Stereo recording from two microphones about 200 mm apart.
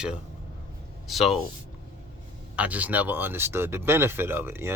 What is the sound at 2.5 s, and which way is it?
Speech, 5° right (ahead or behind).